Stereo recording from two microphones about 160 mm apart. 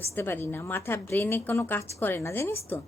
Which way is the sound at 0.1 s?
15° left (ahead or behind).